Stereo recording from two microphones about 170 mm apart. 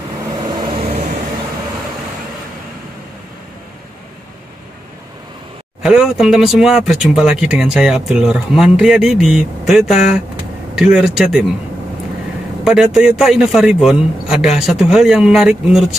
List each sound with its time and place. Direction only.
0.4 s vehicle: 25° right (ahead or behind)
5.8 s speech: centre (ahead or behind)
12.6 s speech: 5° right (ahead or behind)